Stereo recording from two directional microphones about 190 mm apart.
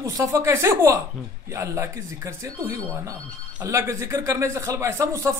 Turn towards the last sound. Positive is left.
turn(degrees=-15)  # may be behind; listen again after turning